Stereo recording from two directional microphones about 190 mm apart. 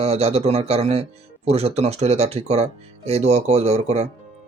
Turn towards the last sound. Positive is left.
turn(degrees=-35)  # may be behind; listen again after turning